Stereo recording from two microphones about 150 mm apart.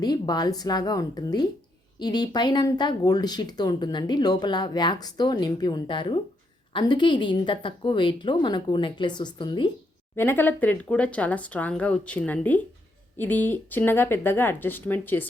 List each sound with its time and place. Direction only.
0.0 s a woman's voice: 25° left (ahead or behind)
10.2 s speech: 15° left (ahead or behind)